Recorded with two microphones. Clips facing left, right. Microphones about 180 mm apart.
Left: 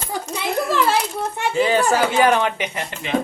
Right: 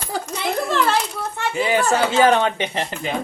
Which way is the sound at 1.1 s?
15° left (ahead or behind).